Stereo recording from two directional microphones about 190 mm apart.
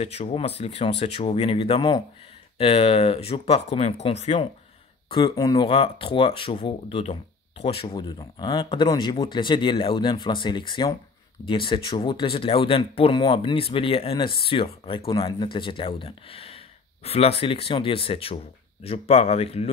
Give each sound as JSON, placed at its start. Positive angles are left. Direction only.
{"t": 0.0, "sound": "speech", "side_deg": 35}
{"t": 5.1, "sound": "speech", "side_deg": 20}